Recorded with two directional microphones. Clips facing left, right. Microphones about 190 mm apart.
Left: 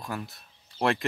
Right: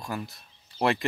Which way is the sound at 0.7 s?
Centre (ahead or behind).